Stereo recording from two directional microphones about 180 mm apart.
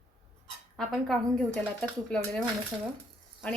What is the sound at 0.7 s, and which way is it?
A woman's voice, 5° left (ahead or behind).